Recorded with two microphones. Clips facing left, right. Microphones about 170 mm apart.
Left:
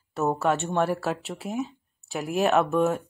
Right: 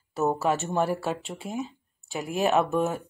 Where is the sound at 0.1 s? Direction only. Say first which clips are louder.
Left 1 dB; centre (ahead or behind).